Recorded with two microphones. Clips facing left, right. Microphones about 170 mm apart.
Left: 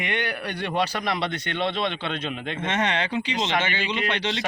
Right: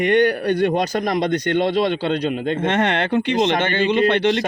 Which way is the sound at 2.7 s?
60° right (ahead or behind).